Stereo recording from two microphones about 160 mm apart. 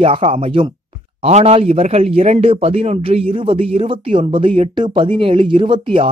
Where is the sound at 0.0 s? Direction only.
35° right (ahead or behind).